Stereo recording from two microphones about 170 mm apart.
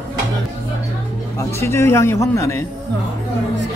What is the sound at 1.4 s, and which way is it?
A man's voice, 15° left (ahead or behind).